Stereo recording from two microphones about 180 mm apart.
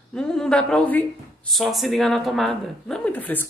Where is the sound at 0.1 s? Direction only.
5° left (ahead or behind).